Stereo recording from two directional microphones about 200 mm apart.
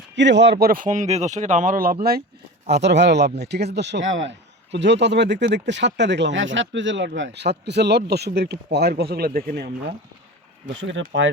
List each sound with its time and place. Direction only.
0.2 s speech: 60° right (ahead or behind)
2.8 s speech: 60° right (ahead or behind)
10.8 s speech: 65° right (ahead or behind)